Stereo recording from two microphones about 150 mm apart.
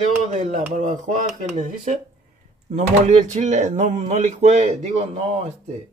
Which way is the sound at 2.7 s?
50° right (ahead or behind).